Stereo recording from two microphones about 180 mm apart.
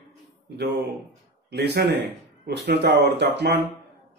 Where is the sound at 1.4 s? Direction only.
65° right (ahead or behind).